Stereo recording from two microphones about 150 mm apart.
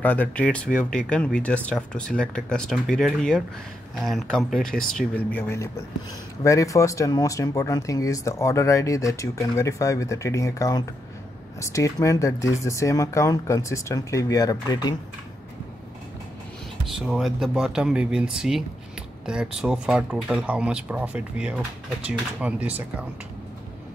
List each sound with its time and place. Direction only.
0.0 s speech: 10° left (ahead or behind)
16.8 s speech: centre (ahead or behind)